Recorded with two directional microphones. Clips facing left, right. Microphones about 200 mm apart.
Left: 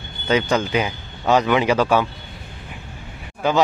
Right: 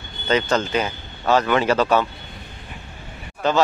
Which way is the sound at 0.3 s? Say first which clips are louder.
Left 1 dB; 10° left (ahead or behind).